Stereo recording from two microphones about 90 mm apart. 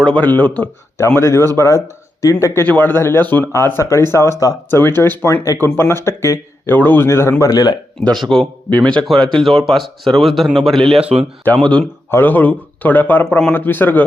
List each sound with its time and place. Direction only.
0.0 s speech: 15° left (ahead or behind)
0.9 s a man's voice: 30° left (ahead or behind)
3.5 s speech: 30° left (ahead or behind)
4.7 s a man's voice: 25° left (ahead or behind); by 7.8 s 45° left (ahead or behind)
7.9 s a man's voice: 5° left (ahead or behind); by 14.0 s 20° left (ahead or behind)